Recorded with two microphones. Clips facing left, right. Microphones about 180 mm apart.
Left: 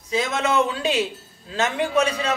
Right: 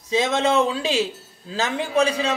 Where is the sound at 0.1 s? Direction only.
30° right (ahead or behind).